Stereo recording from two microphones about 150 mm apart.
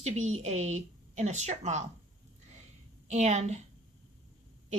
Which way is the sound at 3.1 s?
50° right (ahead or behind).